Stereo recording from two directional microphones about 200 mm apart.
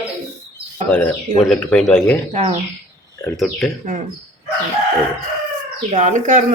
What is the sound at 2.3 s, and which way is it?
Speech, 35° right (ahead or behind).